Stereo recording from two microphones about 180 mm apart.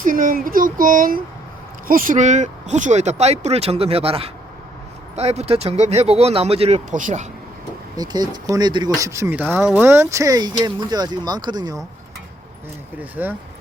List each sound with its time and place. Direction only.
0.0 s speech: 50° right (ahead or behind)
7.9 s speech: 20° right (ahead or behind)
13.0 s speech: 10° right (ahead or behind)